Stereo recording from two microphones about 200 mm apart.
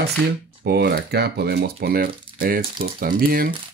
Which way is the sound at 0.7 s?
50° right (ahead or behind).